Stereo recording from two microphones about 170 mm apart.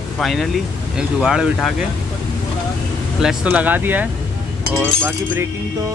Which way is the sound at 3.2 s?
10° right (ahead or behind).